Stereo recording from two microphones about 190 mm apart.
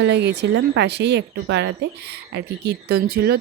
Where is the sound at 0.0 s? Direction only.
65° right (ahead or behind).